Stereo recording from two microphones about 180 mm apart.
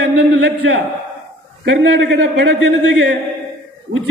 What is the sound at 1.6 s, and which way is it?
Speech, 85° right.